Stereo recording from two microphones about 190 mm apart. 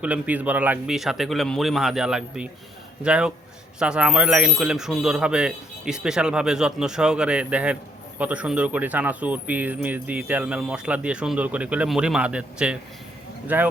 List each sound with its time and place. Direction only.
0.0 s speech: 5° right (ahead or behind)